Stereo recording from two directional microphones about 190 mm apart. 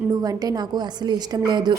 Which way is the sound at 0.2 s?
20° right (ahead or behind).